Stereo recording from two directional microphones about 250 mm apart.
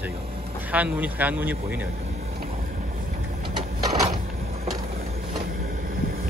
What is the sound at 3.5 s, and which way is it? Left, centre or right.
Printer, centre.